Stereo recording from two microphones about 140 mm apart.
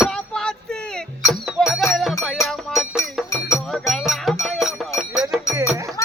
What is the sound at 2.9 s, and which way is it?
Music, 20° left (ahead or behind).